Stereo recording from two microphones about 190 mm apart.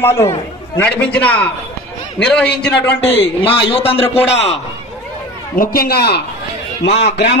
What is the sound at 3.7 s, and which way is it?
Speech, 30° left (ahead or behind).